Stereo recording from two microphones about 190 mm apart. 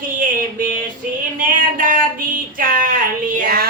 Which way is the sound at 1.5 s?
45° right (ahead or behind).